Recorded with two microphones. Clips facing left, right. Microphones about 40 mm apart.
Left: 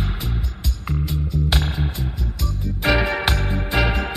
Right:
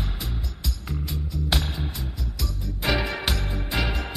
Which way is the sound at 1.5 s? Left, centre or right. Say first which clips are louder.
Left 4 dB; left.